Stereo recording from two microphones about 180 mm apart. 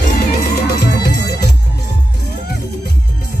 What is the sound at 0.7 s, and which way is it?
Music, 65° left (ahead or behind).